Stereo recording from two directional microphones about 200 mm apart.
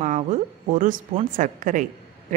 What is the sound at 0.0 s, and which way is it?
A woman's voice, 35° right (ahead or behind).